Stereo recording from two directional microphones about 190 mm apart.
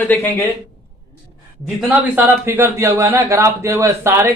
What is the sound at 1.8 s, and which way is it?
Speech, 10° right (ahead or behind).